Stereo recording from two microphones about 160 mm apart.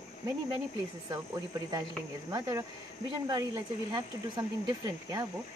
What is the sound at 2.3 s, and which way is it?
Speech, 20° right (ahead or behind).